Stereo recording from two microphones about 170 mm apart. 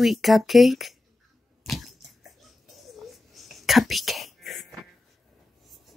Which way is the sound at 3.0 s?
Centre (ahead or behind).